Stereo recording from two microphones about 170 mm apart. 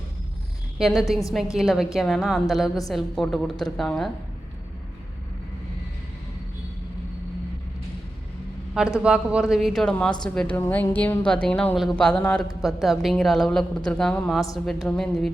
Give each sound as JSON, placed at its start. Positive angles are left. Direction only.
{"t": 0.8, "sound": "a woman's voice", "side_deg": 0}
{"t": 9.0, "sound": "a woman's voice", "side_deg": -5}